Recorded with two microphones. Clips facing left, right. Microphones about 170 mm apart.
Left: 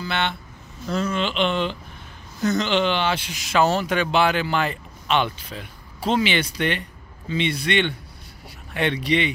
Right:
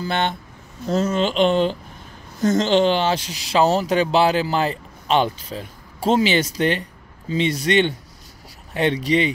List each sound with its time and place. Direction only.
0.0 s speech: 45° right (ahead or behind)